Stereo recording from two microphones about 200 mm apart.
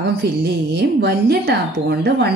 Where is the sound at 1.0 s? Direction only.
55° right (ahead or behind).